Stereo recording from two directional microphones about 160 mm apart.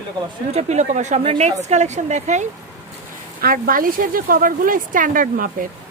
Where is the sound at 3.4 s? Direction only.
65° right (ahead or behind).